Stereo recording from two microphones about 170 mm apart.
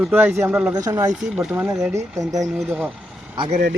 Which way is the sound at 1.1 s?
5° right (ahead or behind).